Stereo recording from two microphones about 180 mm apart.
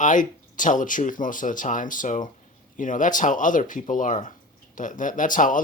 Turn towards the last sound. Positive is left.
turn(degrees=50)  # may be behind; listen again after turning